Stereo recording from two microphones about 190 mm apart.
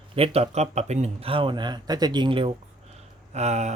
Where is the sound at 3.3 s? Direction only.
35° right (ahead or behind).